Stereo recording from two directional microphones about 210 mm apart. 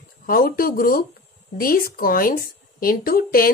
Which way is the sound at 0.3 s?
45° left (ahead or behind).